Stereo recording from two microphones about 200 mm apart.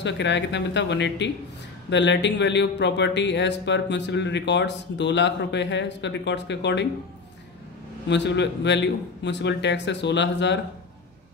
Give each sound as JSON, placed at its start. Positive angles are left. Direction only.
{"t": 0.0, "sound": "speech", "side_deg": 60}
{"t": 8.1, "sound": "speech", "side_deg": 60}